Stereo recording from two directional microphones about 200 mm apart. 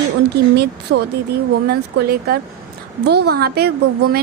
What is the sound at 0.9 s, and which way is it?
Speech, 75° right (ahead or behind).